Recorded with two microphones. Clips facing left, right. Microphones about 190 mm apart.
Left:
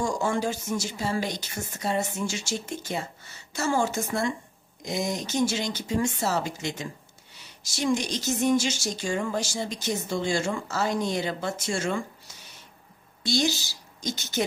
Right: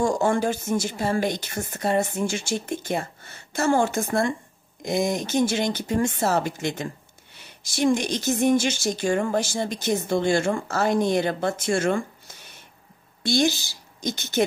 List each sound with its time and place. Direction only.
0.0 s a woman's voice: 55° right (ahead or behind)